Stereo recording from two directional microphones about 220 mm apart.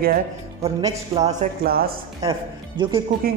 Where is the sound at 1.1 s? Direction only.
25° right (ahead or behind).